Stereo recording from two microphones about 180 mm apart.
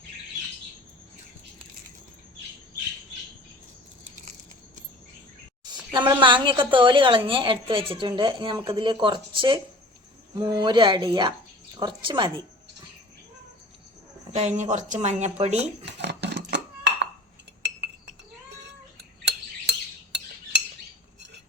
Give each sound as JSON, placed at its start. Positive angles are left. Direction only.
{"t": 5.9, "sound": "speech", "side_deg": -25}
{"t": 14.3, "sound": "speech", "side_deg": -40}
{"t": 15.9, "sound": "dishes", "side_deg": -70}
{"t": 17.6, "sound": "cutlery", "side_deg": -70}